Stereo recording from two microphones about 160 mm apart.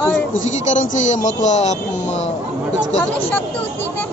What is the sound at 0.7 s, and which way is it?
Speech, 50° left (ahead or behind).